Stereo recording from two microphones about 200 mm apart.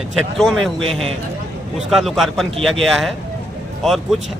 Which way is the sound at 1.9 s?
Centre (ahead or behind).